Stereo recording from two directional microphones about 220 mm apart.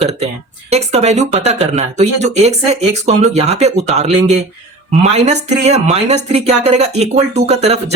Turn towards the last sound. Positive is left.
turn(degrees=-30)  # may be behind; listen again after turning